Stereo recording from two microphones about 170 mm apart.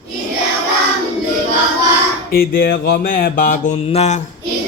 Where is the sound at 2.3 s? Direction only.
60° left (ahead or behind).